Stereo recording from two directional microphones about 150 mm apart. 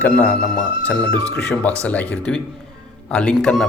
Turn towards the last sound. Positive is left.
turn(degrees=0)  # may be behind; listen again after turning